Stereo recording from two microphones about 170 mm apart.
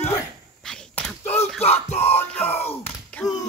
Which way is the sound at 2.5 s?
35° left (ahead or behind).